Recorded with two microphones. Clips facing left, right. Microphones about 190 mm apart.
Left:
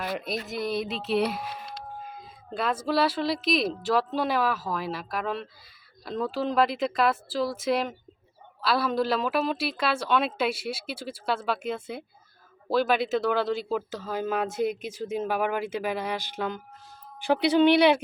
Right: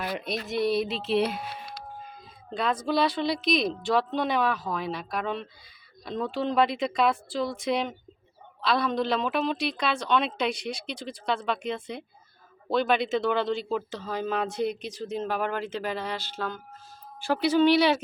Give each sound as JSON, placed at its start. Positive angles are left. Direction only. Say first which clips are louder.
{"t": 0.0, "sound": "a woman's voice", "louder": "even", "side_deg": 0}